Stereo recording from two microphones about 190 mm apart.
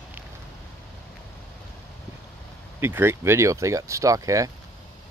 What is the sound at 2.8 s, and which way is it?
Speech, 10° right (ahead or behind).